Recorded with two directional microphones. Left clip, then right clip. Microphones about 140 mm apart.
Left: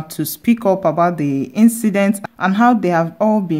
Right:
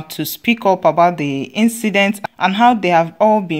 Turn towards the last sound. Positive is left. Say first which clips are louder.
# right 4 dB
turn(degrees=-5)  # may be behind; listen again after turning